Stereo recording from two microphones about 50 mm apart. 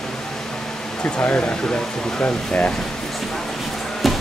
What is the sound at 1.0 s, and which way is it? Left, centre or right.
Speech, left.